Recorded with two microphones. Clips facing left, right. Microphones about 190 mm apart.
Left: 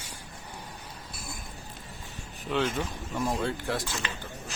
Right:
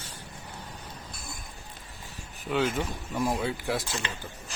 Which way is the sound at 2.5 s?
5° right (ahead or behind).